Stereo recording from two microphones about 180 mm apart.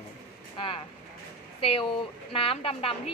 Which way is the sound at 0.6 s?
30° left (ahead or behind).